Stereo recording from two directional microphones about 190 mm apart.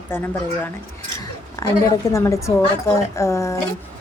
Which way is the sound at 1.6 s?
15° left (ahead or behind).